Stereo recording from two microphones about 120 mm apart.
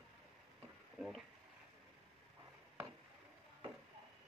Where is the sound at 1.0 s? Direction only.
Centre (ahead or behind).